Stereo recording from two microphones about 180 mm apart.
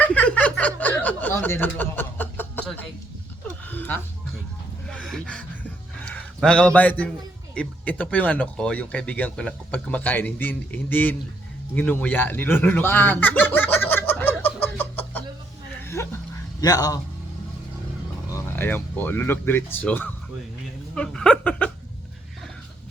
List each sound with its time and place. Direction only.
0.0 s snicker: 10° left (ahead or behind)
3.7 s a sound: 10° left (ahead or behind)
6.1 s a man's voice: 5° left (ahead or behind)
16.0 s dog: 15° left (ahead or behind)
16.6 s a man's voice: 20° left (ahead or behind)
18.3 s speech: 15° left (ahead or behind)
20.9 s a sound: 5° left (ahead or behind)